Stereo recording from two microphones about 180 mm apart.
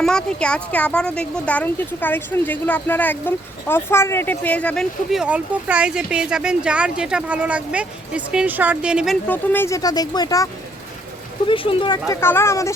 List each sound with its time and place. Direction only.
0.0 s speech: 5° left (ahead or behind)
9.2 s speech: 10° left (ahead or behind); by 12.1 s 25° left (ahead or behind)
12.2 s speech: 15° left (ahead or behind)